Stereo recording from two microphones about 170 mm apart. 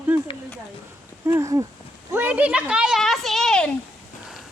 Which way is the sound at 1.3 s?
20° right (ahead or behind).